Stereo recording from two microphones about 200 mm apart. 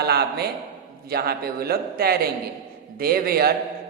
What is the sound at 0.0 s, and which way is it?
A man's voice, 55° right (ahead or behind).